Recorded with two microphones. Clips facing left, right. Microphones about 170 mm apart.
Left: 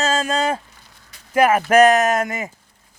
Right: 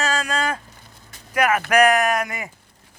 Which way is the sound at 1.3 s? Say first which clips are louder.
Left 4 dB; 30° left (ahead or behind).